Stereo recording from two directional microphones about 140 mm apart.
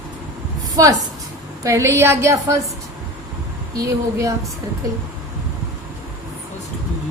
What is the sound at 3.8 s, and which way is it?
Speech, 25° right (ahead or behind).